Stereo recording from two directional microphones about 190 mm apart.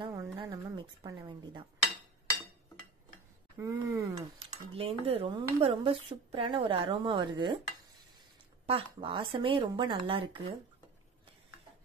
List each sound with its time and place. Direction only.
0.0 s a sound: 20° right (ahead or behind)
3.5 s cutlery: 15° right (ahead or behind)
5.6 s a woman's voice: 30° right (ahead or behind)
8.6 s a woman's voice: 30° right (ahead or behind)